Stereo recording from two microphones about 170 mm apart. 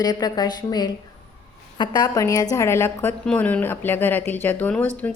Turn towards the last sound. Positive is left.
turn(degrees=10)  # may be behind; listen again after turning